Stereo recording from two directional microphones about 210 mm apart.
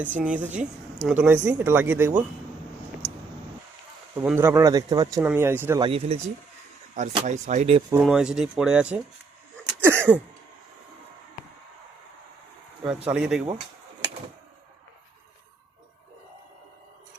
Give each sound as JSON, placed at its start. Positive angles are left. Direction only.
{"t": 0.0, "sound": "speech", "side_deg": -5}
{"t": 4.1, "sound": "speech", "side_deg": -10}
{"t": 5.9, "sound": "speech", "side_deg": -30}
{"t": 7.9, "sound": "speech", "side_deg": -5}
{"t": 9.8, "sound": "throat clearing", "side_deg": -10}
{"t": 12.8, "sound": "speech", "side_deg": -5}